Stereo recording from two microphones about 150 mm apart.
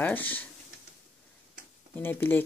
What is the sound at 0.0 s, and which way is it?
Speech, 10° left (ahead or behind).